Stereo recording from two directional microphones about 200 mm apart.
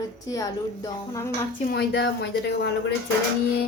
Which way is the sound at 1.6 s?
50° left (ahead or behind).